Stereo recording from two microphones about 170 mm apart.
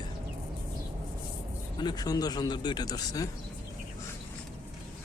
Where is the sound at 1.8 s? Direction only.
25° left (ahead or behind).